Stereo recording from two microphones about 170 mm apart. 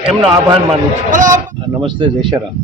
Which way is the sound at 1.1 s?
50° right (ahead or behind).